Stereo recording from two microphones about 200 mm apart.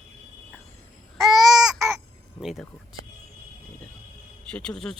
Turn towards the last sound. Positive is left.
turn(degrees=0)  # may be behind; listen again after turning